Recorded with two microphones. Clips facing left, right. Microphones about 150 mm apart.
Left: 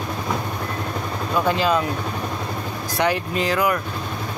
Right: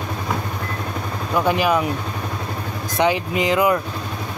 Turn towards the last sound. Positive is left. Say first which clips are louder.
# right 3 dB
turn(degrees=-20)  # may be behind; listen again after turning